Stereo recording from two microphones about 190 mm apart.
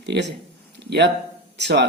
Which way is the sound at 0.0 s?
65° right (ahead or behind).